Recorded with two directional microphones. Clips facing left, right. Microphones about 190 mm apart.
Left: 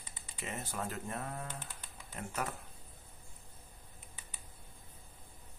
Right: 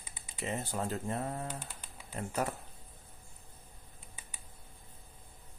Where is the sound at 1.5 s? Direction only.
10° right (ahead or behind).